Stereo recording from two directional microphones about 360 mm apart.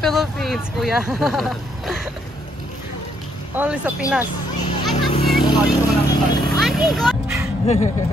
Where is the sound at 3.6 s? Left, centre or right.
Centre.